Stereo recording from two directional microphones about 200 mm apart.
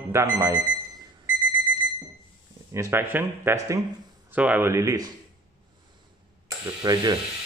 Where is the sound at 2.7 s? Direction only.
15° right (ahead or behind).